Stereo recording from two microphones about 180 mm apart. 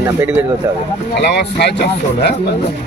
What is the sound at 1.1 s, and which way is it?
Speech, 70° left (ahead or behind).